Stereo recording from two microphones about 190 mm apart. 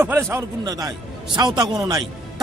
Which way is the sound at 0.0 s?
10° right (ahead or behind).